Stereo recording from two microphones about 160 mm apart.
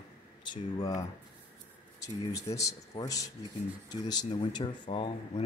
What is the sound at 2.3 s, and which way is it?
Speech, 20° left (ahead or behind).